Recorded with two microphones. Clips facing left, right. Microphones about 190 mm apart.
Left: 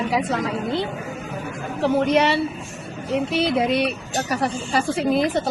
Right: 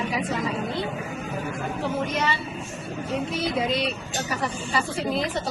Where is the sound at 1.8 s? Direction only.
75° left (ahead or behind).